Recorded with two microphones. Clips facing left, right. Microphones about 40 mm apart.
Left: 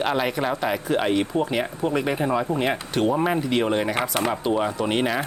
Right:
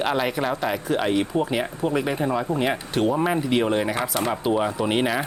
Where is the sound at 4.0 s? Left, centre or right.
Left.